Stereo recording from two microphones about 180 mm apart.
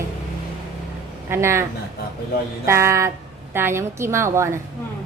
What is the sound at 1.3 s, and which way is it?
Speech, 15° right (ahead or behind).